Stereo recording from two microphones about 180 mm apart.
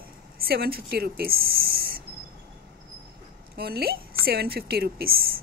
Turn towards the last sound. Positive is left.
turn(degrees=-55)  # may be behind; listen again after turning